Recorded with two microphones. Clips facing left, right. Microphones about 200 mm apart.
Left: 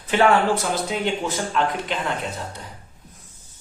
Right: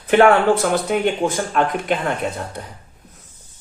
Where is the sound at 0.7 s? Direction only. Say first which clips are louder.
Right 5 dB; 55° right (ahead or behind).